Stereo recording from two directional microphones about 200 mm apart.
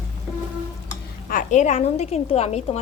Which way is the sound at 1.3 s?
40° left (ahead or behind).